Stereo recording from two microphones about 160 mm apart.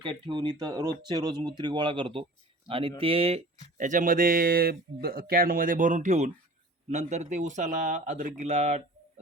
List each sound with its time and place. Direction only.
0.0 s speech: 30° right (ahead or behind)